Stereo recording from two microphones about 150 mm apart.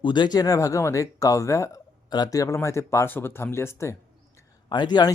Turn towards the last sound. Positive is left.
turn(degrees=30)  # may be behind; listen again after turning